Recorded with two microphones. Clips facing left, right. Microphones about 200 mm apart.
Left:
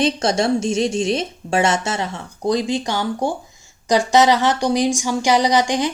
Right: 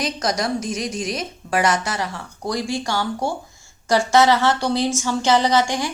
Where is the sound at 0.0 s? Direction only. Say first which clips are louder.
Left 5 dB; 30° left (ahead or behind).